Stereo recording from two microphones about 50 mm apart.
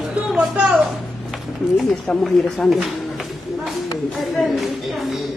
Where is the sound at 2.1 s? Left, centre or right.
Centre.